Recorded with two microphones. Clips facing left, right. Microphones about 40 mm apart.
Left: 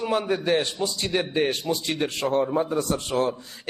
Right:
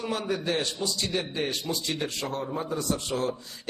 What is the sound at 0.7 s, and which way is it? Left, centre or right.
A man's voice, left.